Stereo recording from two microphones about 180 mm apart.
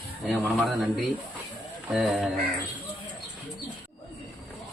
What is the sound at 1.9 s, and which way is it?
Speech, centre (ahead or behind).